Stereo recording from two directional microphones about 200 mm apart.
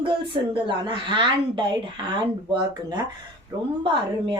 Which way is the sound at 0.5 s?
25° right (ahead or behind).